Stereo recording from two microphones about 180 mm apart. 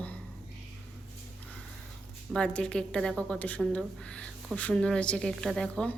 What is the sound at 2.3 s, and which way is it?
A woman's voice, 5° left (ahead or behind).